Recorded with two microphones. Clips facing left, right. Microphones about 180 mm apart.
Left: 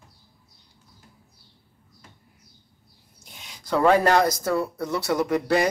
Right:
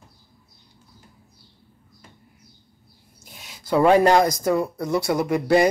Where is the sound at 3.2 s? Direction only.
5° right (ahead or behind).